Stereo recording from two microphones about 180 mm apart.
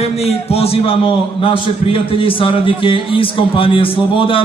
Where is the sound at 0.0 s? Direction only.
35° left (ahead or behind).